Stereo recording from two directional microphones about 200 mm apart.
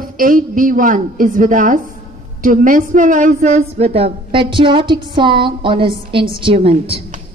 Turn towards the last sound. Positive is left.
turn(degrees=-25)  # may be behind; listen again after turning